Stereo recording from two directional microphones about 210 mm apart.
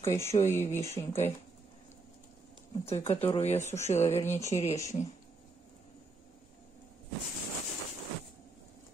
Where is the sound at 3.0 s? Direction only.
10° left (ahead or behind).